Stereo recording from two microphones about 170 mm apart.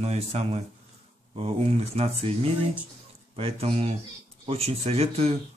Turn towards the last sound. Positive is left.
turn(degrees=-35)  # may be behind; listen again after turning